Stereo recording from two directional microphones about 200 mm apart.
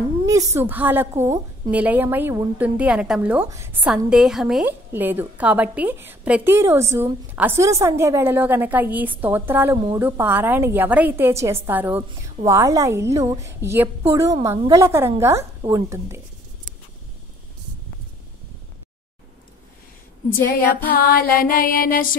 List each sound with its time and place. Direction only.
0.3 s a woman's voice: 15° right (ahead or behind)
20.9 s music: 45° left (ahead or behind)